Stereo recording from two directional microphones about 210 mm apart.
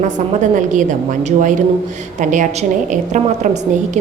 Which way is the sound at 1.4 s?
40° right (ahead or behind).